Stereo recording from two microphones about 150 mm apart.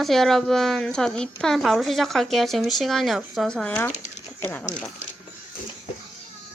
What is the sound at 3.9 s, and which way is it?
Speech, 50° left (ahead or behind).